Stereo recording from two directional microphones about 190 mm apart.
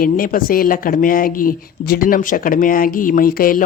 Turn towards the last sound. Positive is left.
turn(degrees=50)  # may be behind; listen again after turning